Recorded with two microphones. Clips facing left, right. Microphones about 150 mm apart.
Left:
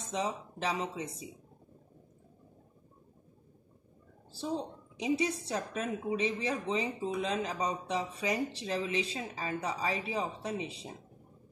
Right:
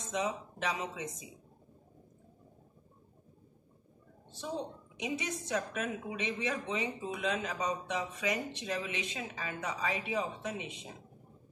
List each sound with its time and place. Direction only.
0.0 s a woman's voice: 30° left (ahead or behind)
4.3 s a woman's voice: 30° left (ahead or behind)